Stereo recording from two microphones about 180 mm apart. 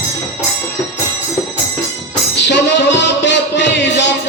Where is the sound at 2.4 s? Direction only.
75° left (ahead or behind).